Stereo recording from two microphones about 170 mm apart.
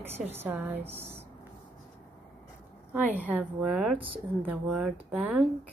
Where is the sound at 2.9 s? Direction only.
10° right (ahead or behind).